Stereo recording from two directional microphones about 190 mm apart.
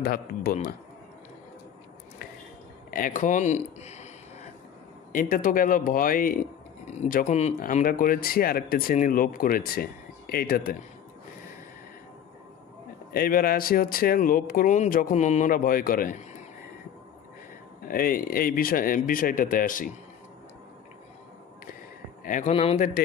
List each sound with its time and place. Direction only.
0.0 s speech: 50° left (ahead or behind)
2.9 s speech: 45° left (ahead or behind)
13.1 s speech: 50° left (ahead or behind)
17.8 s speech: 50° left (ahead or behind)
22.2 s a man's voice: 40° left (ahead or behind)